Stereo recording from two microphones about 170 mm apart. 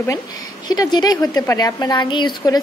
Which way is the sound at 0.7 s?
25° left (ahead or behind).